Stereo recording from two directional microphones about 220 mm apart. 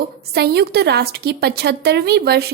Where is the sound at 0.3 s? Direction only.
45° right (ahead or behind).